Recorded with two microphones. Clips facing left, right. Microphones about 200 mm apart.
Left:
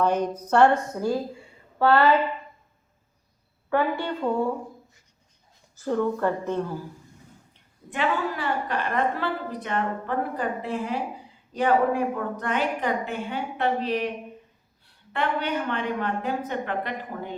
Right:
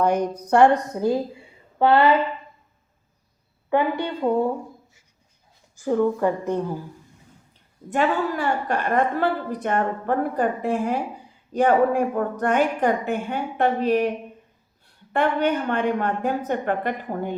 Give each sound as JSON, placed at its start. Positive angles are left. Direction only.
{"t": 0.0, "sound": "a woman's voice", "side_deg": -10}
{"t": 3.7, "sound": "a woman's voice", "side_deg": -20}
{"t": 5.7, "sound": "a woman's voice", "side_deg": -15}
{"t": 7.9, "sound": "a woman's voice", "side_deg": -45}
{"t": 15.1, "sound": "a woman's voice", "side_deg": -50}